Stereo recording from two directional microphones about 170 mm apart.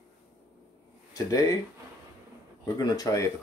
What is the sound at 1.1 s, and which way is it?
Speech, 20° left (ahead or behind).